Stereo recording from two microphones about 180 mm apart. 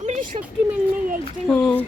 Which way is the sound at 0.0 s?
45° right (ahead or behind).